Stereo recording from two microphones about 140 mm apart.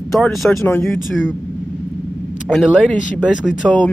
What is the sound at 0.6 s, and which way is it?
Speech, 15° left (ahead or behind).